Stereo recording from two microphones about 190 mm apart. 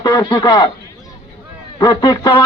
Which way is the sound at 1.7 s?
20° left (ahead or behind).